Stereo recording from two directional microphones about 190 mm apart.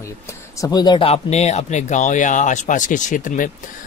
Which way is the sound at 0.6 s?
20° left (ahead or behind).